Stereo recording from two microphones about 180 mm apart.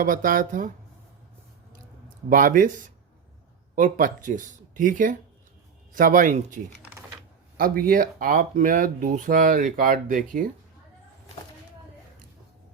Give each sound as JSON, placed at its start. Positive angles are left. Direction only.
{"t": 0.0, "sound": "speech", "side_deg": -50}
{"t": 2.3, "sound": "speech", "side_deg": -50}